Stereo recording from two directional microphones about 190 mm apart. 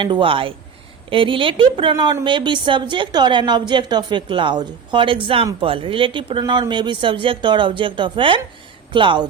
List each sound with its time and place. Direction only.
0.0 s a woman's voice: 25° right (ahead or behind)